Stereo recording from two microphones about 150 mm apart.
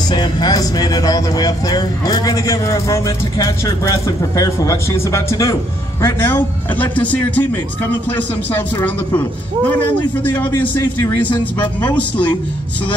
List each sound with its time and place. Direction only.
0.1 s a man's voice: 30° left (ahead or behind); by 7.4 s 10° left (ahead or behind)
9.7 s a man's voice: 15° left (ahead or behind)
11.2 s speech: 30° left (ahead or behind)
11.9 s a man's voice: 10° left (ahead or behind)